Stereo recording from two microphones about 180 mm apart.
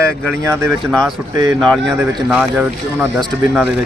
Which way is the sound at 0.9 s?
5° left (ahead or behind).